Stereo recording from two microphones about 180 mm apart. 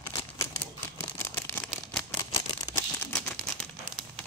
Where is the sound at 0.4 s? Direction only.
15° left (ahead or behind).